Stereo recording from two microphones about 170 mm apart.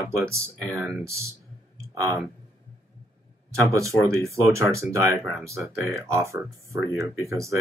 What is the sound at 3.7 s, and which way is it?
Speech, 20° right (ahead or behind).